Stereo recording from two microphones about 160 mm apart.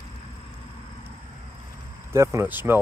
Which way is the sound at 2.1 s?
15° right (ahead or behind).